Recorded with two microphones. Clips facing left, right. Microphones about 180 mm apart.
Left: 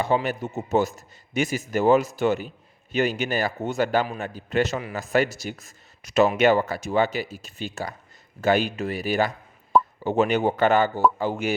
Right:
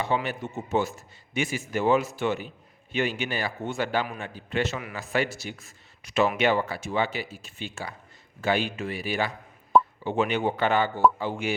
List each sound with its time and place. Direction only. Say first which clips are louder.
0.0 s a man's voice: left 4 dB; 40° left (ahead or behind)